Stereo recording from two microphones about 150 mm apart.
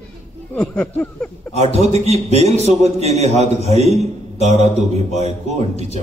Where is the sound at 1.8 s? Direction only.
45° right (ahead or behind).